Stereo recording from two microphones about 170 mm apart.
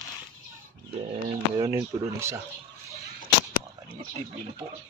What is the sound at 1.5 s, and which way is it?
Speech, 20° right (ahead or behind).